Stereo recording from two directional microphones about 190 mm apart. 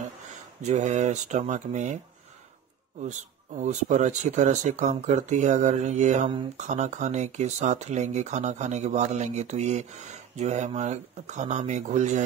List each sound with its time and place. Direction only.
0.6 s speech: 40° right (ahead or behind)
3.0 s speech: 40° right (ahead or behind)